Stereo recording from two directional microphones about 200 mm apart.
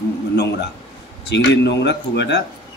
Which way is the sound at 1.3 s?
60° left (ahead or behind).